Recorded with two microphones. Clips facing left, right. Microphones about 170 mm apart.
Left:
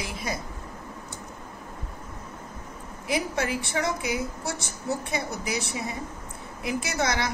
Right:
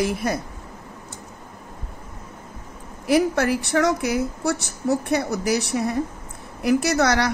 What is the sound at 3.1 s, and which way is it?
A woman's voice, 65° right (ahead or behind).